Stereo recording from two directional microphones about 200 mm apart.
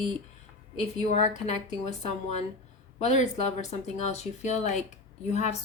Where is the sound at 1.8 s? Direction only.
35° left (ahead or behind).